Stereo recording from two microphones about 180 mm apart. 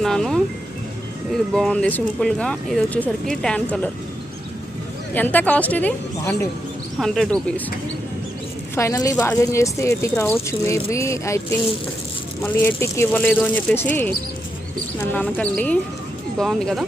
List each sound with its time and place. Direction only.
0.0 s music: centre (ahead or behind)
1.3 s speech: centre (ahead or behind)
5.1 s speech: 10° left (ahead or behind)
8.7 s speech: 15° left (ahead or behind)
12.4 s speech: 10° left (ahead or behind)
15.1 s speech: 5° left (ahead or behind)